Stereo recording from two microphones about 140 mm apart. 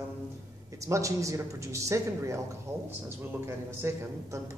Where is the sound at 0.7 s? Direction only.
20° right (ahead or behind).